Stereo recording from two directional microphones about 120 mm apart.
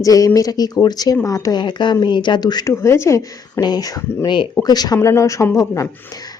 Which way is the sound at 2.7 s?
25° left (ahead or behind).